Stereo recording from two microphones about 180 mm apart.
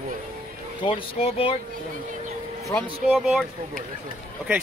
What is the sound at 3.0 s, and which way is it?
Speech, centre (ahead or behind).